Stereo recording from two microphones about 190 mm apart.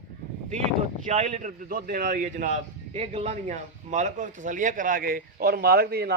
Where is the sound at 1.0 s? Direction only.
35° right (ahead or behind).